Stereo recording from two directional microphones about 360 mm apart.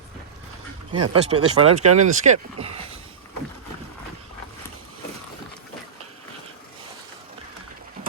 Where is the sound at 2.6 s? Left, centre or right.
Centre.